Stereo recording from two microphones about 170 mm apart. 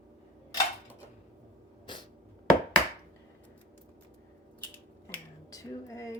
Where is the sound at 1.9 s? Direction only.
30° left (ahead or behind).